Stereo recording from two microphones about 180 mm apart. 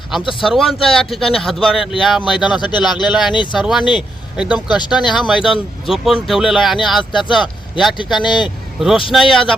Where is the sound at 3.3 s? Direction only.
25° left (ahead or behind).